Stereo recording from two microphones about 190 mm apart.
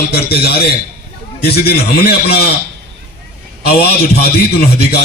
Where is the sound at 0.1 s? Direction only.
55° left (ahead or behind).